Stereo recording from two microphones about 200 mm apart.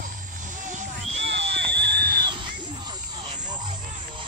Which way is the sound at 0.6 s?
35° right (ahead or behind).